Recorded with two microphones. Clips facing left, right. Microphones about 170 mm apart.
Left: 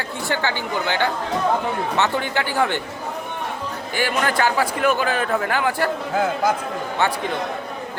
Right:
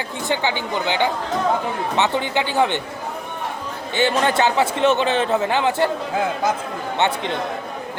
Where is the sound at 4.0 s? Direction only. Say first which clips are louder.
Right 3 dB; 25° right (ahead or behind).